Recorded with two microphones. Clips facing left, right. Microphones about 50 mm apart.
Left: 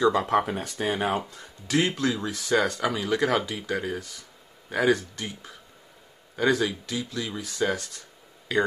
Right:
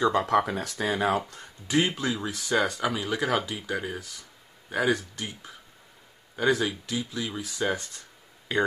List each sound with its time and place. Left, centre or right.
0.4 s speech: centre
1.4 s speech: centre
8.5 s speech: right